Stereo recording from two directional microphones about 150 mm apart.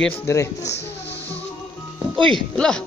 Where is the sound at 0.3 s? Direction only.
20° left (ahead or behind).